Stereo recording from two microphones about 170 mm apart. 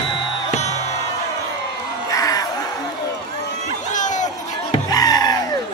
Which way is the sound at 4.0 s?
45° left (ahead or behind).